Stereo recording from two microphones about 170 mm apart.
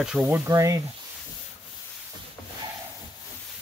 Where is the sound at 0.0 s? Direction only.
5° right (ahead or behind).